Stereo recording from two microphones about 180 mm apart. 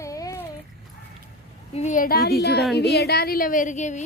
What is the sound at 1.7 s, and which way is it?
Speech, 40° left (ahead or behind).